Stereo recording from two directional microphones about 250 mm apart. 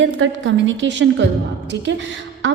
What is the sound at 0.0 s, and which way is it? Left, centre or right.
A woman's voice, right.